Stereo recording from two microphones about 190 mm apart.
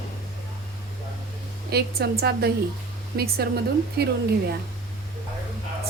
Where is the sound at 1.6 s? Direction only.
55° right (ahead or behind).